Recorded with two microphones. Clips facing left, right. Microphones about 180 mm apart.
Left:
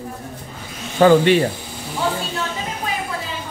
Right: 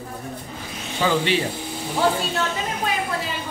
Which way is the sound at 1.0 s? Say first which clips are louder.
Left 9 dB; 55° left (ahead or behind).